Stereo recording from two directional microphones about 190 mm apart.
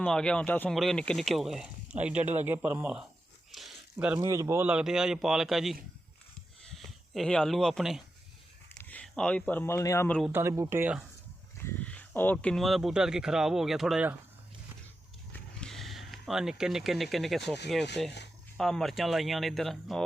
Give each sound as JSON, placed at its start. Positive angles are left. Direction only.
{"t": 0.0, "sound": "speech", "side_deg": 5}
{"t": 3.5, "sound": "a sound", "side_deg": 0}
{"t": 3.9, "sound": "speech", "side_deg": -5}
{"t": 6.7, "sound": "speech", "side_deg": 0}
{"t": 10.3, "sound": "speech", "side_deg": -15}
{"t": 11.5, "sound": "speech", "side_deg": 10}
{"t": 15.3, "sound": "a sound", "side_deg": 5}
{"t": 18.0, "sound": "speech", "side_deg": 0}